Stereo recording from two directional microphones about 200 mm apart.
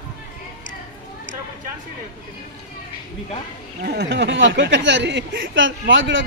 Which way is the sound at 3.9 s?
60° right (ahead or behind).